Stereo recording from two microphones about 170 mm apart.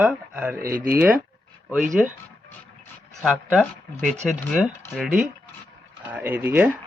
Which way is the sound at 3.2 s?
Centre (ahead or behind).